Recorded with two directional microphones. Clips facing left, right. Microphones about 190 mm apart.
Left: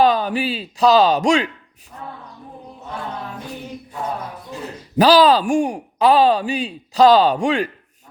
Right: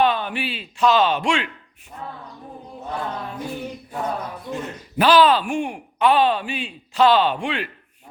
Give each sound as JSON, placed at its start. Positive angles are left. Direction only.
{"t": 0.0, "sound": "speech", "side_deg": 40}
{"t": 4.6, "sound": "speech", "side_deg": 35}